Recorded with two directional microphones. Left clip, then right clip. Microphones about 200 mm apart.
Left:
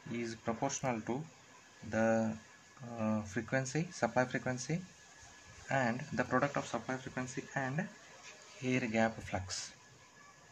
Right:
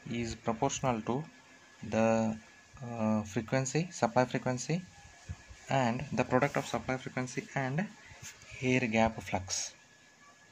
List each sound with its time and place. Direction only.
0.1 s speech: 20° right (ahead or behind)
8.6 s speech: 20° right (ahead or behind)